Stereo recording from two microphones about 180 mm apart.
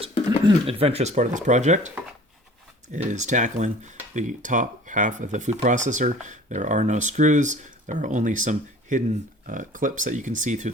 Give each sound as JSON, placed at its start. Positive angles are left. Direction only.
{"t": 0.3, "sound": "speech", "side_deg": -30}
{"t": 2.9, "sound": "speech", "side_deg": -40}